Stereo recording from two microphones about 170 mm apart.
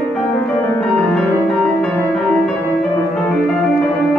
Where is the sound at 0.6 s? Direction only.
Centre (ahead or behind).